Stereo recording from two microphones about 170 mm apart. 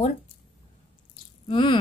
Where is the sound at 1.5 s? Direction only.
30° left (ahead or behind).